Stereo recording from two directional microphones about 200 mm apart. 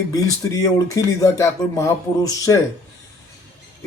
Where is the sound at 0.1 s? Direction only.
20° left (ahead or behind).